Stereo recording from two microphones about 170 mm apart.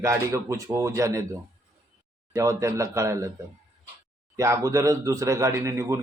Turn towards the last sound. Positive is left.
turn(degrees=-15)  # may be behind; listen again after turning